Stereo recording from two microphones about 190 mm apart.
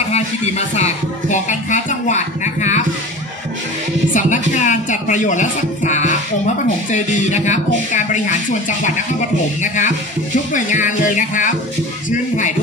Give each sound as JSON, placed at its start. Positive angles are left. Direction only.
{"t": 0.1, "sound": "speech", "side_deg": 35}
{"t": 4.1, "sound": "speech", "side_deg": 40}